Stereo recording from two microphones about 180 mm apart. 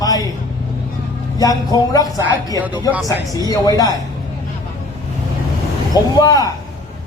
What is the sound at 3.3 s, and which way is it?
Speech, 20° left (ahead or behind).